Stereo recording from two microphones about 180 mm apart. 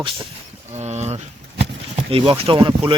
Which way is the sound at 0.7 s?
40° right (ahead or behind).